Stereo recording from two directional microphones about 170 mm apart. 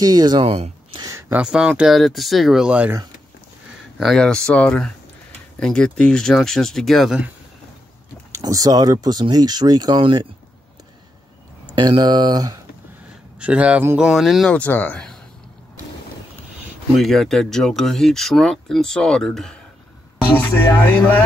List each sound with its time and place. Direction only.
0.0 s speech: 25° right (ahead or behind)
1.0 s a sound: 20° right (ahead or behind)
1.4 s speech: 5° right (ahead or behind)
4.0 s speech: 5° left (ahead or behind)
8.3 s speech: 20° right (ahead or behind)
11.7 s speech: 25° right (ahead or behind)
13.4 s speech: 5° right (ahead or behind)
16.9 s speech: centre (ahead or behind)